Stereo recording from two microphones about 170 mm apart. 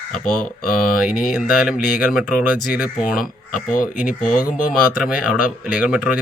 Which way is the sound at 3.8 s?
55° left (ahead or behind).